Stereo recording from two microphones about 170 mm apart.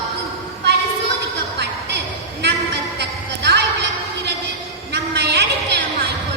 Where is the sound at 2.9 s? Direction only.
85° right.